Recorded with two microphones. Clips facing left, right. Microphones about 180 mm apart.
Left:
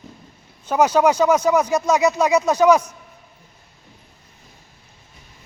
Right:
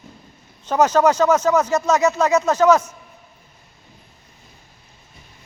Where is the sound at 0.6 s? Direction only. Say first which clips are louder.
Even; 10° left (ahead or behind).